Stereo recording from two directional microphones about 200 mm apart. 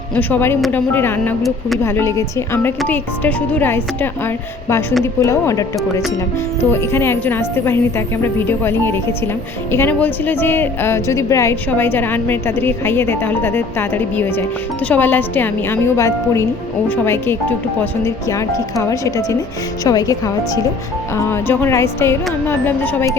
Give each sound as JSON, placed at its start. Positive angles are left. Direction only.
{"t": 0.2, "sound": "a woman's voice", "side_deg": 10}
{"t": 1.8, "sound": "a woman's voice", "side_deg": 15}
{"t": 5.2, "sound": "a woman's voice", "side_deg": 15}